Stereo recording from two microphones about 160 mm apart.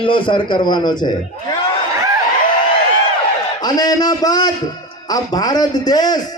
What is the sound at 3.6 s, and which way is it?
A man's voice, 25° left (ahead or behind).